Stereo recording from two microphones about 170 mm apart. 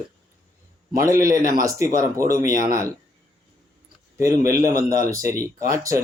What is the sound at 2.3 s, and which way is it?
Speech, 20° right (ahead or behind).